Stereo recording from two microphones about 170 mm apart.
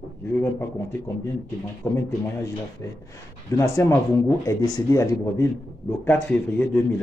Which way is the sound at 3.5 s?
20° left (ahead or behind).